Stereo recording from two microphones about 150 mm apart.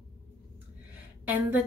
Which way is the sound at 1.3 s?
10° right (ahead or behind).